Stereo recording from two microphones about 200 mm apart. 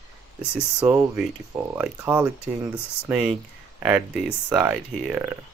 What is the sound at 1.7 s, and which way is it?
Speech, 10° right (ahead or behind).